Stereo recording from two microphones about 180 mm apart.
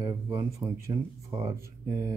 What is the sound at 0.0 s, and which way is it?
Speech, 20° right (ahead or behind).